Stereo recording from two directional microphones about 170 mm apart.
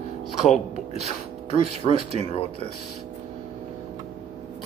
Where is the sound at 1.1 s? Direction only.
35° left (ahead or behind).